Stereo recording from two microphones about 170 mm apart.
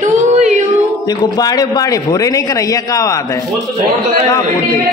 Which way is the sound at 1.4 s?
20° left (ahead or behind).